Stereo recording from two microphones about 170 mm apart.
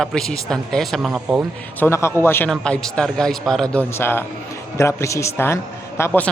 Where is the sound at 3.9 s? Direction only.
15° left (ahead or behind).